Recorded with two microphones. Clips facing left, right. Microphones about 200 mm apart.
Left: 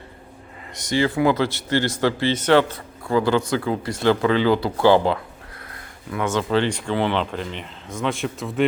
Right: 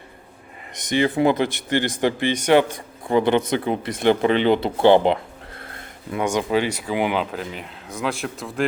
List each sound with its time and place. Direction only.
0.7 s speech: 20° right (ahead or behind); by 8.6 s centre (ahead or behind)